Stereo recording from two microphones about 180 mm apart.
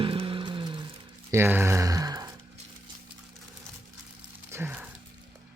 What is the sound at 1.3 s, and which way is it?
Speech, 10° right (ahead or behind).